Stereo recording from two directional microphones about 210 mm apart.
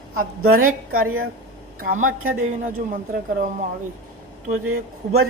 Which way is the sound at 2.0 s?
75° right (ahead or behind).